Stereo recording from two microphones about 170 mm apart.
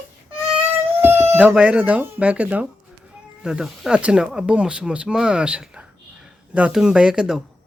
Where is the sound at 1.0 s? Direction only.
15° right (ahead or behind).